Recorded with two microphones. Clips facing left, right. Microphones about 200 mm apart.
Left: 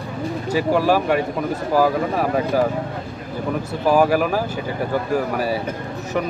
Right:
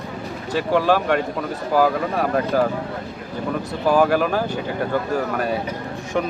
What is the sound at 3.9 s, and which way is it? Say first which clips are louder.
A man's voice: left 1 dB; 10° left (ahead or behind).